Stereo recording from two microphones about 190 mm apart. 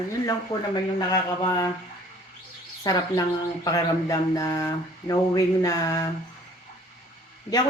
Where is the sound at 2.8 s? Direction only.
20° left (ahead or behind).